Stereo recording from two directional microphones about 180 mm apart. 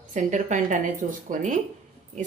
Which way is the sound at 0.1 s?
45° right (ahead or behind).